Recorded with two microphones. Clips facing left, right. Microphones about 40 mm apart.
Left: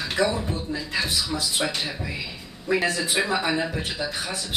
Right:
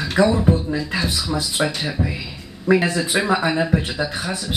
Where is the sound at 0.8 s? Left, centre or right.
Centre.